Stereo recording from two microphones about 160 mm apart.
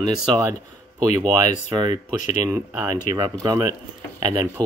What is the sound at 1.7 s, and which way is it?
Speech, 30° right (ahead or behind).